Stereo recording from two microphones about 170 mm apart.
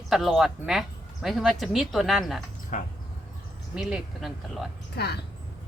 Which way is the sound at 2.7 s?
45° left (ahead or behind).